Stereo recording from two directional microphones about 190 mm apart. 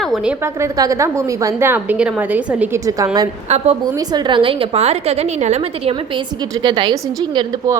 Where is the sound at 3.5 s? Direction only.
35° right (ahead or behind).